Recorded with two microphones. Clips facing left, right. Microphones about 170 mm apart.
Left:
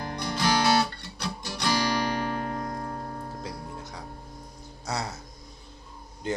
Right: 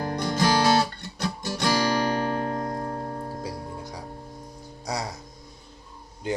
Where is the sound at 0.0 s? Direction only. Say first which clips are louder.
Right 4 dB; 45° right (ahead or behind).